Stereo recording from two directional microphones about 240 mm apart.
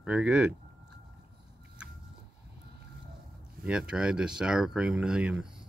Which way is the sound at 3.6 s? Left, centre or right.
Centre.